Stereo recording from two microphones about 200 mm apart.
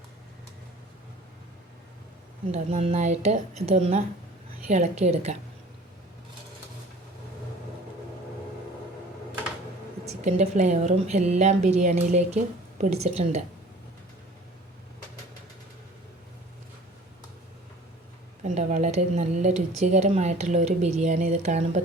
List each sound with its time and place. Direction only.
2.5 s speech: 35° right (ahead or behind)
10.2 s speech: 35° right (ahead or behind)
18.4 s speech: 35° right (ahead or behind)